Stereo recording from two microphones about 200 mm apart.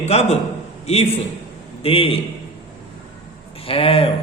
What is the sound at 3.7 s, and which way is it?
Speech, 30° left (ahead or behind).